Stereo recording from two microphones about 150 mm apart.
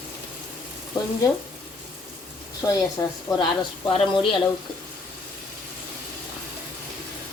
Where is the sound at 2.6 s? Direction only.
20° left (ahead or behind).